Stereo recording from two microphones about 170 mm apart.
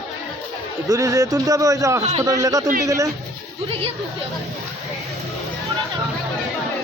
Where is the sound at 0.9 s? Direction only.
20° right (ahead or behind).